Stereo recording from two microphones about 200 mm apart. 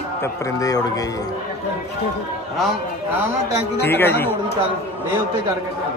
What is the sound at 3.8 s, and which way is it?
Speech, 10° left (ahead or behind).